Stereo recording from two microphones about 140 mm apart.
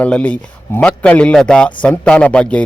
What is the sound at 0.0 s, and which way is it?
A man's voice, 10° left (ahead or behind).